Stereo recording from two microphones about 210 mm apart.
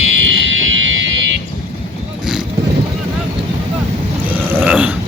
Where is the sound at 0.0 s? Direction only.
65° right (ahead or behind).